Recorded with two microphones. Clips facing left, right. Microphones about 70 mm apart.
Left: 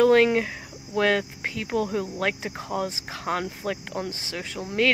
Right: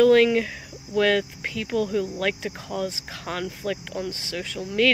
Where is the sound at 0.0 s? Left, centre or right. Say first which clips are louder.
Right 1 dB; left.